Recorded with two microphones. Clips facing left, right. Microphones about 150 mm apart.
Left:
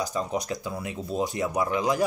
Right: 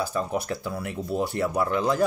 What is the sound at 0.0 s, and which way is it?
Speech, 15° left (ahead or behind).